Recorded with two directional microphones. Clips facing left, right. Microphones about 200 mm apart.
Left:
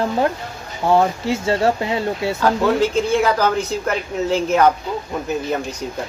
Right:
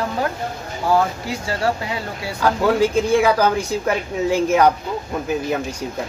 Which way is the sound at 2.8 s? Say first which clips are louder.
Right 1 dB; 10° right (ahead or behind).